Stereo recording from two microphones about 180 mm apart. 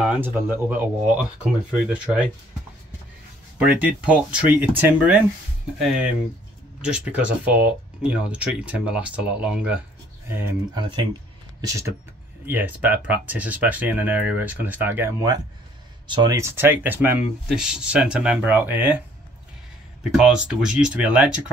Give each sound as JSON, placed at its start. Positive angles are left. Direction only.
{"t": 0.0, "sound": "speech", "side_deg": -10}
{"t": 3.5, "sound": "speech", "side_deg": -5}
{"t": 10.7, "sound": "speech", "side_deg": -25}
{"t": 20.1, "sound": "speech", "side_deg": -5}